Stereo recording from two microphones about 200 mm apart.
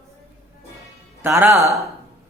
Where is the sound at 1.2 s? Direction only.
10° right (ahead or behind).